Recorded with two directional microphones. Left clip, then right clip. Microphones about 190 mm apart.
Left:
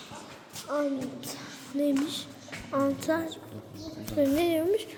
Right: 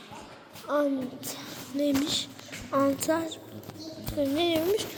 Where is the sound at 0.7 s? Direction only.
20° right (ahead or behind).